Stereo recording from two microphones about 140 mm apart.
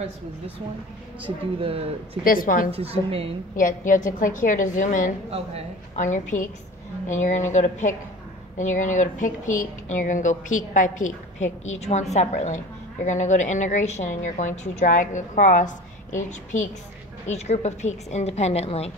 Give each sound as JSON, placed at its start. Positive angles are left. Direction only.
{"t": 1.6, "sound": "a woman's voice", "side_deg": -40}
{"t": 2.2, "sound": "a woman's voice", "side_deg": 90}
{"t": 2.7, "sound": "a woman's voice", "side_deg": -45}
{"t": 3.5, "sound": "a woman's voice", "side_deg": 75}
{"t": 17.3, "sound": "a woman's voice", "side_deg": 50}